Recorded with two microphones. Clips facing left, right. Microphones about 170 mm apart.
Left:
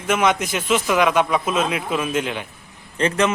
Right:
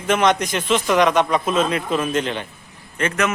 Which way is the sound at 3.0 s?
30° left (ahead or behind).